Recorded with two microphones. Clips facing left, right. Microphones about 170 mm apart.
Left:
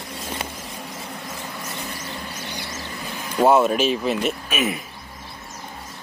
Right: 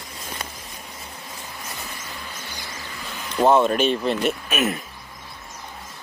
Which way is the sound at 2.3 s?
70° left (ahead or behind).